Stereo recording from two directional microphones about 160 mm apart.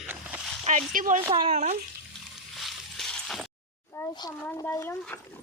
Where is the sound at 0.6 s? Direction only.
50° right (ahead or behind).